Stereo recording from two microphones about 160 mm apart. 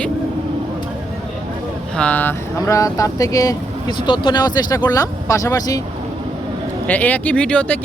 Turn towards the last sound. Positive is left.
turn(degrees=5)  # may be behind; listen again after turning